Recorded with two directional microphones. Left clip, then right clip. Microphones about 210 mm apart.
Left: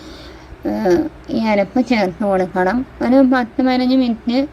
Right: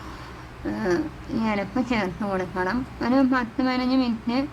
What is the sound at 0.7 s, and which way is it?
A woman's voice, 20° left (ahead or behind).